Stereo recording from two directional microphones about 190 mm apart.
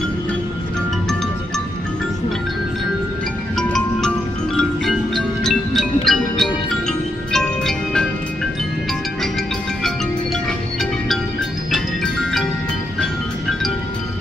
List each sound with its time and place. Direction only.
3.5 s music: 5° left (ahead or behind)
11.7 s glockenspiel: centre (ahead or behind)